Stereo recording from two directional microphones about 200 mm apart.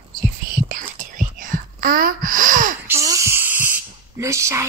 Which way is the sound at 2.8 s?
15° right (ahead or behind).